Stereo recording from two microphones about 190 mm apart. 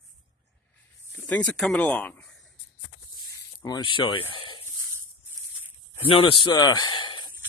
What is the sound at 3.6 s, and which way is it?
Speech, 20° left (ahead or behind).